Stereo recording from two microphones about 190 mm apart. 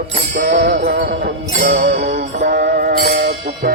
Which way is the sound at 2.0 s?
40° right (ahead or behind).